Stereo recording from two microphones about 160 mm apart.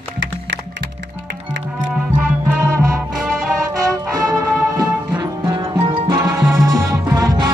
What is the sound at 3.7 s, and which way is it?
Music, 20° right (ahead or behind).